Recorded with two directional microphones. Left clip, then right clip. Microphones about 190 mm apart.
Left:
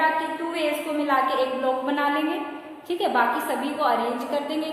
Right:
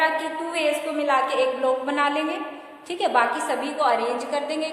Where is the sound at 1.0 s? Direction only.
20° right (ahead or behind).